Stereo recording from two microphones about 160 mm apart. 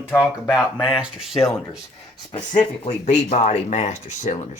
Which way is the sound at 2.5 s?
50° left (ahead or behind).